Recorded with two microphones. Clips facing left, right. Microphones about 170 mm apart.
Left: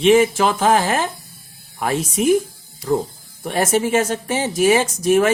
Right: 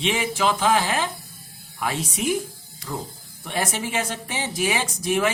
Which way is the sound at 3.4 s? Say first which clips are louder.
Left 9 dB; 45° left (ahead or behind).